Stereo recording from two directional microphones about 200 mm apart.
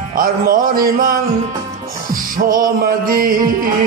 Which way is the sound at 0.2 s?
45° right (ahead or behind).